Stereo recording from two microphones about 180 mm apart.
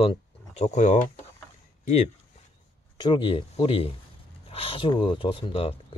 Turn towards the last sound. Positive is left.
turn(degrees=30)  # may be behind; listen again after turning